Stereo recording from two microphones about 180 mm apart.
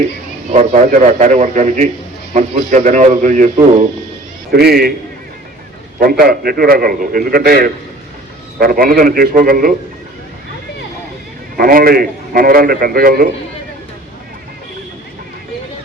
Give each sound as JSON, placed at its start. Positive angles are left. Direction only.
{"t": 0.5, "sound": "a man's voice", "side_deg": -40}
{"t": 4.5, "sound": "a man's voice", "side_deg": -60}
{"t": 6.0, "sound": "a man's voice", "side_deg": -55}
{"t": 11.5, "sound": "a man's voice", "side_deg": -55}